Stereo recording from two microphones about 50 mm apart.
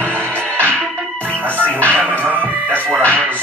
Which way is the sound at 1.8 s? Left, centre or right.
Left.